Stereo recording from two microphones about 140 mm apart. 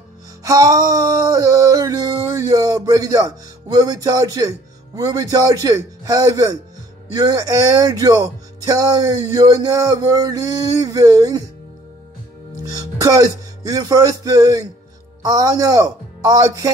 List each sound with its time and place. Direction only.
0.4 s a sound: 25° right (ahead or behind)
7.2 s speech: 25° right (ahead or behind)
12.7 s music: 25° right (ahead or behind)
13.7 s speech: 25° right (ahead or behind)